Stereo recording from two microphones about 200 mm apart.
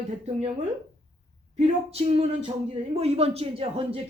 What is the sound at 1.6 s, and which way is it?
A woman's voice, 30° right (ahead or behind).